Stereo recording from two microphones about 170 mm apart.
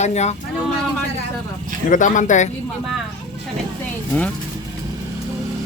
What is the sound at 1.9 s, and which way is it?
Speech, 50° left (ahead or behind).